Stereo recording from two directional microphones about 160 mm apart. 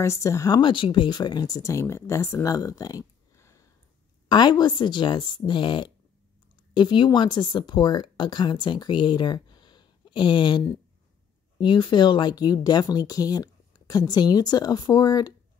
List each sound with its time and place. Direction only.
0.0 s speech: 20° left (ahead or behind)